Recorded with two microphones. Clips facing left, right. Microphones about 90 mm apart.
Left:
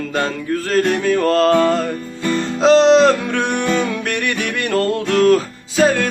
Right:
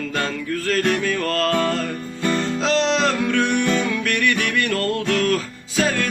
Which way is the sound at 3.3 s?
45° left (ahead or behind).